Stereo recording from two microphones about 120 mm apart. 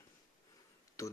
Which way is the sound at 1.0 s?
25° left (ahead or behind).